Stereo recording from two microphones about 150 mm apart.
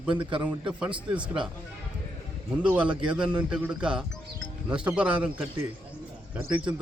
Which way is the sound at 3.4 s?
5° right (ahead or behind).